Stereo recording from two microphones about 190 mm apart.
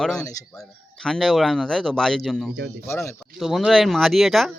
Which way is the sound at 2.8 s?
15° left (ahead or behind).